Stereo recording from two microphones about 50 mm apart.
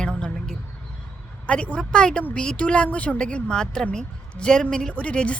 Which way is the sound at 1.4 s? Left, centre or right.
Left.